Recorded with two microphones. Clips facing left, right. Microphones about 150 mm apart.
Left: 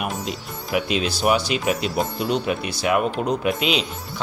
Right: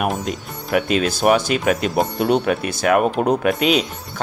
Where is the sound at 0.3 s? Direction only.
50° right (ahead or behind).